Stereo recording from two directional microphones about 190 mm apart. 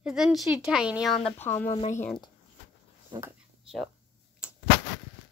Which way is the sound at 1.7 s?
40° left (ahead or behind).